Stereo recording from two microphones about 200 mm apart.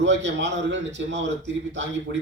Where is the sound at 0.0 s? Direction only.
65° right (ahead or behind).